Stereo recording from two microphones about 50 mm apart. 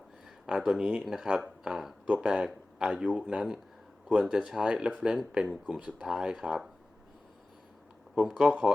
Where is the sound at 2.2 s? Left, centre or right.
Centre.